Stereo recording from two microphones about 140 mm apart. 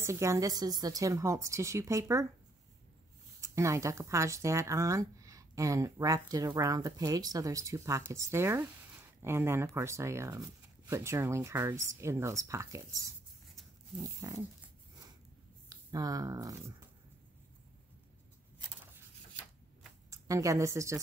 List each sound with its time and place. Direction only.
0.0 s speech: 20° right (ahead or behind)
3.3 s speech: 20° right (ahead or behind)
15.7 s speech: 25° right (ahead or behind)
20.1 s a woman's voice: 25° right (ahead or behind)